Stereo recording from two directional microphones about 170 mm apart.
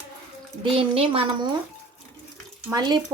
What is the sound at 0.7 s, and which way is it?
Speech, 35° right (ahead or behind).